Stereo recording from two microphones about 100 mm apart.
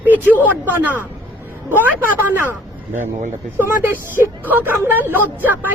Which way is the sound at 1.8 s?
20° right (ahead or behind).